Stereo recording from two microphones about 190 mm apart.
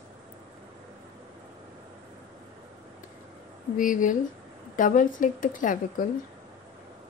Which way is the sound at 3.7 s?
45° left (ahead or behind).